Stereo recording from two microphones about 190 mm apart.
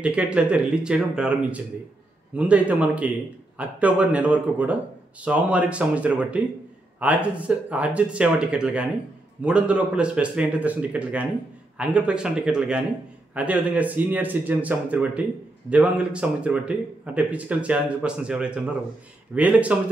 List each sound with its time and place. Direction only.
0.0 s speech: 5° right (ahead or behind)